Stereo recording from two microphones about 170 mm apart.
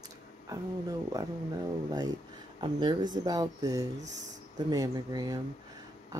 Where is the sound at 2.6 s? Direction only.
25° right (ahead or behind).